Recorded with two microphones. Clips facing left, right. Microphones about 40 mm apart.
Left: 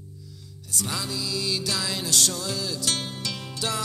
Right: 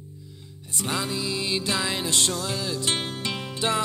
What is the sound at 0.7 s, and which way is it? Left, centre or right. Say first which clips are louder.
Music: right 3 dB; right.